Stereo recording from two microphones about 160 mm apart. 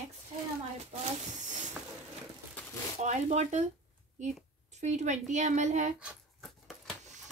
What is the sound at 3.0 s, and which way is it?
A woman's voice, 45° right (ahead or behind).